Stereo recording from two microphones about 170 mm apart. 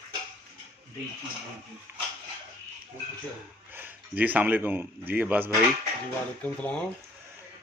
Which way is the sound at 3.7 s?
10° right (ahead or behind).